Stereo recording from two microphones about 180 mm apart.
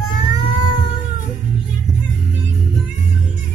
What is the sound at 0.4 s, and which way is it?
Cat, 25° left (ahead or behind).